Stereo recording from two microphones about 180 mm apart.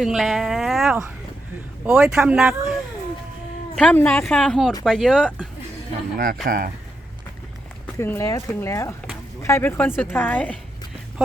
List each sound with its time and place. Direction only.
0.0 s speech: centre (ahead or behind)
3.8 s speech: 5° left (ahead or behind)
6.1 s speech: 50° right (ahead or behind)
7.9 s speech: 15° left (ahead or behind)